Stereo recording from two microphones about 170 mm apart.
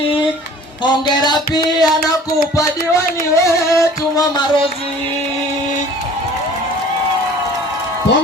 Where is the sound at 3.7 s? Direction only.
20° left (ahead or behind).